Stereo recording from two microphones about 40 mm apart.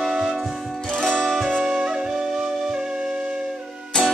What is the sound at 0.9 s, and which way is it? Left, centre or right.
Music, centre.